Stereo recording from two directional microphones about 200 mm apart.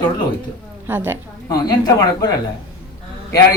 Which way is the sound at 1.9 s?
20° left (ahead or behind).